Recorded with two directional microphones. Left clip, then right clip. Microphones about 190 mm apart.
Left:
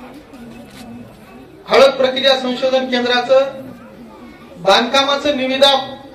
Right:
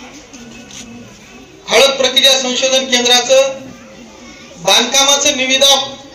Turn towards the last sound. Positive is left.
turn(degrees=55)  # may be behind; listen again after turning